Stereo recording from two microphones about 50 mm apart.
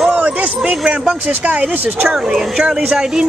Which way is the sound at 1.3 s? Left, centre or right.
Right.